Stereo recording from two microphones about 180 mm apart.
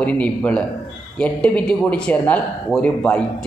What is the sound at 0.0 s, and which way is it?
A man's voice, 10° left (ahead or behind).